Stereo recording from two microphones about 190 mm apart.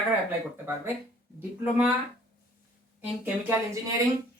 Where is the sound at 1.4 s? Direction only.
10° right (ahead or behind).